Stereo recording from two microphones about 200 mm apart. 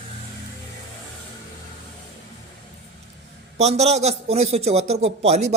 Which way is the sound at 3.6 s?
35° right (ahead or behind).